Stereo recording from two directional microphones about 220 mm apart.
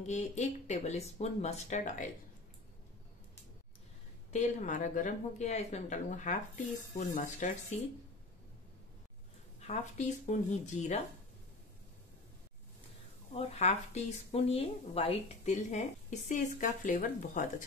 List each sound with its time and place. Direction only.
0.0 s speech: 30° left (ahead or behind)
4.3 s speech: 30° left (ahead or behind)
9.6 s speech: 30° left (ahead or behind)
13.3 s speech: 30° left (ahead or behind)